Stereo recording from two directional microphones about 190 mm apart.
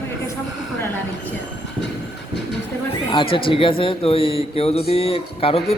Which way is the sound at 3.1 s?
25° left (ahead or behind).